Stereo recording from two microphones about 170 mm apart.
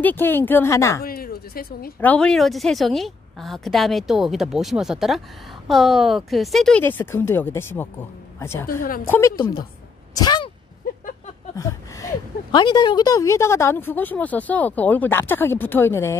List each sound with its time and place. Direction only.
0.0 s a woman's voice: 10° left (ahead or behind)
1.0 s a sound: 60° left (ahead or behind)
2.0 s a woman's voice: 10° left (ahead or behind)
9.4 s a woman's voice: 25° left (ahead or behind)
10.1 s a sound: 25° left (ahead or behind)
11.5 s a woman's voice: 20° left (ahead or behind)